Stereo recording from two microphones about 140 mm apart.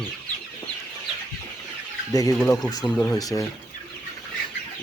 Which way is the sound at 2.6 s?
30° left (ahead or behind).